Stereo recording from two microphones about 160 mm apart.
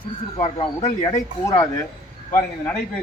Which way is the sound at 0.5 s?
35° left (ahead or behind).